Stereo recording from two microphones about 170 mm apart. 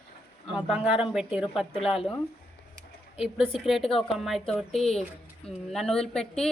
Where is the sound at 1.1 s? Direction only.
5° right (ahead or behind).